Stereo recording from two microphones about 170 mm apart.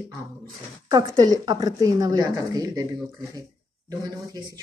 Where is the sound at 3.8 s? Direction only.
20° right (ahead or behind).